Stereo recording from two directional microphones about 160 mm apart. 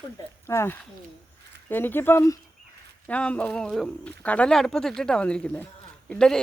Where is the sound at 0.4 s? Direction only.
15° left (ahead or behind).